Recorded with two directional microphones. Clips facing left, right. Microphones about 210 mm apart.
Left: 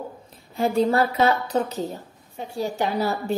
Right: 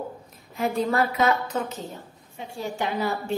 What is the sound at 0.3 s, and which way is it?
A woman's voice, 30° left (ahead or behind).